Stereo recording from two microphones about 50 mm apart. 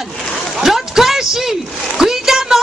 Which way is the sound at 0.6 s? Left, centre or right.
Centre.